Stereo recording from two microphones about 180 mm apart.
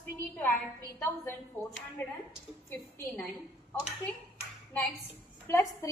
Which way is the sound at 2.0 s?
10° left (ahead or behind).